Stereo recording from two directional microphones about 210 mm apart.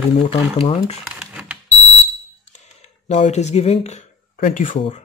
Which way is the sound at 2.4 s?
35° left (ahead or behind).